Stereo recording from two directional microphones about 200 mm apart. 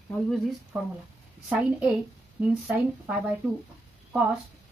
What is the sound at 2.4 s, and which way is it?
Speech, 5° right (ahead or behind).